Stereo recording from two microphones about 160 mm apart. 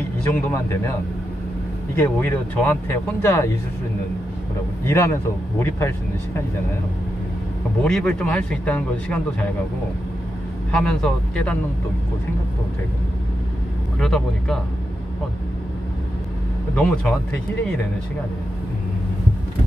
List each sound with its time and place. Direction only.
0.3 s speech: 15° left (ahead or behind)
2.0 s speech: 15° left (ahead or behind)
4.8 s speech: 15° left (ahead or behind)
7.8 s speech: 5° left (ahead or behind)
10.7 s speech: 5° left (ahead or behind)
13.9 s speech: centre (ahead or behind)
16.7 s speech: 5° left (ahead or behind)